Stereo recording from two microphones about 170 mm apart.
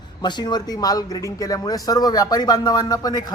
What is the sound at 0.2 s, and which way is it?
A man's voice, 25° left (ahead or behind).